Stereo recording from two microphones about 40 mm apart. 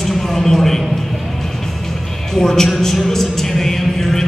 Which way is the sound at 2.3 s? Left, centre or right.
Centre.